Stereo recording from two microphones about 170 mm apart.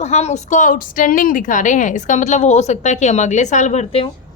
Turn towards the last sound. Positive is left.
turn(degrees=40)  # may be behind; listen again after turning